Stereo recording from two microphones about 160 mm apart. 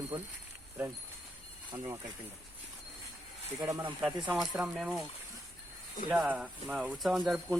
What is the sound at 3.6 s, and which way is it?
Speech, 20° right (ahead or behind).